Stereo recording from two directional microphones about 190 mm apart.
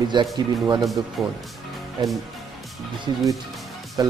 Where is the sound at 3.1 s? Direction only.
20° right (ahead or behind).